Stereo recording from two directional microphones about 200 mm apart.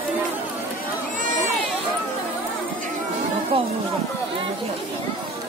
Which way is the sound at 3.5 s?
30° right (ahead or behind).